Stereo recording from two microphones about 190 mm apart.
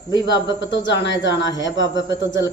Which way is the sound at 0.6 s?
70° left (ahead or behind).